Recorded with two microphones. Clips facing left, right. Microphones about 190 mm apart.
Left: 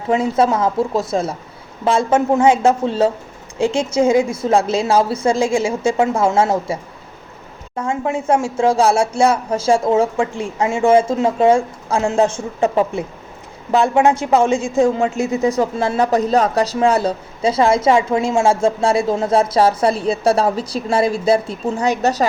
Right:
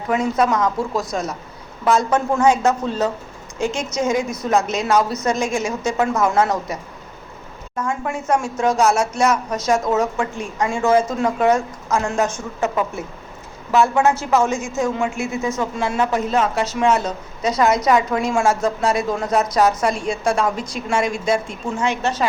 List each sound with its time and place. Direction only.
0.1 s a woman's voice: 30° left (ahead or behind)
7.8 s a woman's voice: 25° left (ahead or behind)
13.7 s a woman's voice: 20° left (ahead or behind)
14.3 s a woman's voice: 30° left (ahead or behind)